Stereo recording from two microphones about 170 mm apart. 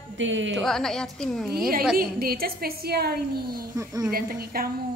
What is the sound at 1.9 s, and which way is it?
A woman's voice, 60° right (ahead or behind).